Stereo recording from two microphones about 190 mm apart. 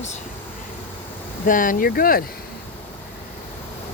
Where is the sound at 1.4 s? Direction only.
45° left (ahead or behind).